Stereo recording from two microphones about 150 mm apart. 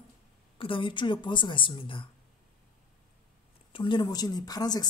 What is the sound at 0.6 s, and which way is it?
A woman's voice, 35° left (ahead or behind).